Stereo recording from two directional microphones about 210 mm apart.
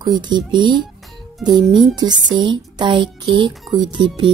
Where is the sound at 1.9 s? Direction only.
20° right (ahead or behind).